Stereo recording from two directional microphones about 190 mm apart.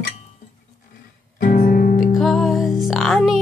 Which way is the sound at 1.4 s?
50° left (ahead or behind).